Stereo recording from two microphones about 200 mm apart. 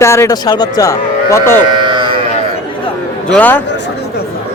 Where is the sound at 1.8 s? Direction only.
25° right (ahead or behind).